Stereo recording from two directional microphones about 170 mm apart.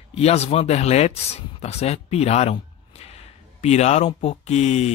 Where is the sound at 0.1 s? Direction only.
40° left (ahead or behind).